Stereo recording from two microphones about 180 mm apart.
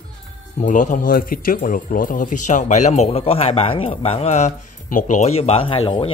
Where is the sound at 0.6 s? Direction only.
45° left (ahead or behind).